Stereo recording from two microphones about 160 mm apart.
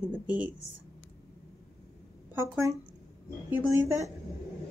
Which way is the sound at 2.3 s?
10° right (ahead or behind).